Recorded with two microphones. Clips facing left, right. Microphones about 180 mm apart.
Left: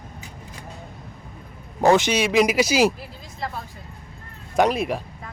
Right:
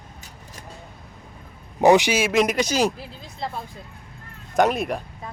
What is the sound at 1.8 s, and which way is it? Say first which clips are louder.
Speech: right 2 dB; 15° right (ahead or behind).